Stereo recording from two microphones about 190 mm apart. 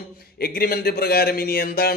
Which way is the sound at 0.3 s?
55° left (ahead or behind).